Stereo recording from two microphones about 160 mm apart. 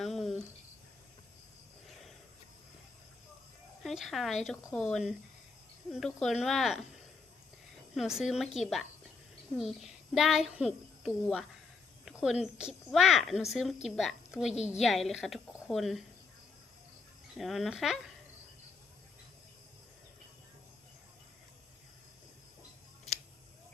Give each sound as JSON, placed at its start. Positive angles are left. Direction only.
{"t": 0.0, "sound": "a sound", "side_deg": 0}
{"t": 3.8, "sound": "a woman's voice", "side_deg": 0}
{"t": 17.3, "sound": "speech", "side_deg": 0}